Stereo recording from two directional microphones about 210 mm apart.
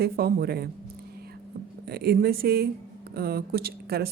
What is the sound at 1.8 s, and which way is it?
Speech, 50° right (ahead or behind).